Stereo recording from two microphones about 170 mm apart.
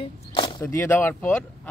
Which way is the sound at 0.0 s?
30° left (ahead or behind).